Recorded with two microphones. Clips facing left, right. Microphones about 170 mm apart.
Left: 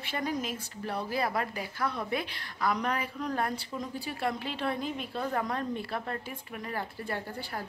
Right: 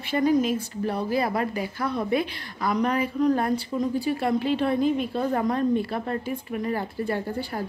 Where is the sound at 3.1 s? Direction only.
15° right (ahead or behind).